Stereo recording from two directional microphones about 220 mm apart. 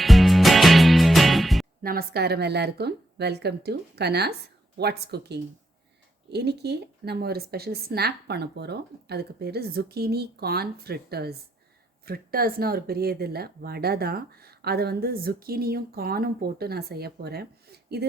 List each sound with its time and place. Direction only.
0.0 s music: centre (ahead or behind)
1.8 s speech: 40° right (ahead or behind)